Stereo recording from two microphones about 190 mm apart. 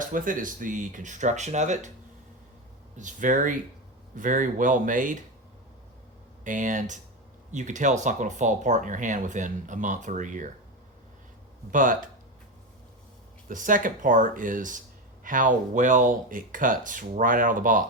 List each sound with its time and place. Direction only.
0.0 s speech: 45° right (ahead or behind)
3.0 s speech: 40° right (ahead or behind)
6.4 s speech: 45° right (ahead or behind)
11.7 s speech: 45° right (ahead or behind)
13.5 s speech: 45° right (ahead or behind)